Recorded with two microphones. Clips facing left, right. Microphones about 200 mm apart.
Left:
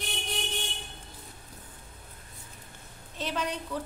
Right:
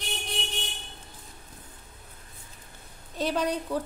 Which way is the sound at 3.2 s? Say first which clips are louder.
Right 6 dB; 40° right (ahead or behind).